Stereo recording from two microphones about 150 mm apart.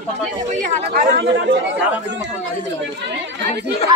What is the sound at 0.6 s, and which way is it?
Speech, 50° right (ahead or behind).